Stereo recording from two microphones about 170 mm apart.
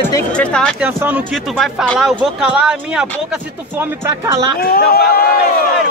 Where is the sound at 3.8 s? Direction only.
15° right (ahead or behind).